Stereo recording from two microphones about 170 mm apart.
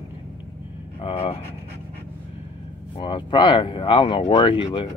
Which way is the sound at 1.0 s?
35° left (ahead or behind).